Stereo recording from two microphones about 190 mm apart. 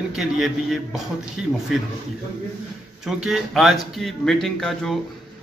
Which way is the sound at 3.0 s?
Centre (ahead or behind).